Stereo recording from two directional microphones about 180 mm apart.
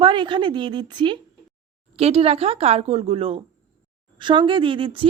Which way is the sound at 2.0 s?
35° right (ahead or behind).